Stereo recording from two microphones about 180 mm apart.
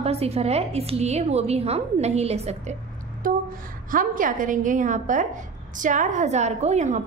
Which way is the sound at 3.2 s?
50° right (ahead or behind).